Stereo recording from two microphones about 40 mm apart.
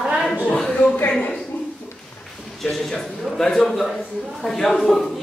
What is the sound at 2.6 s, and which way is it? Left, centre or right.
A man's voice, centre.